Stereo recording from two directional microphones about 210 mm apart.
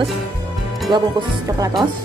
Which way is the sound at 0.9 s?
20° right (ahead or behind).